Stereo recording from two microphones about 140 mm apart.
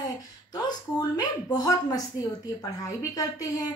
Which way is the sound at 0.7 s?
30° left (ahead or behind).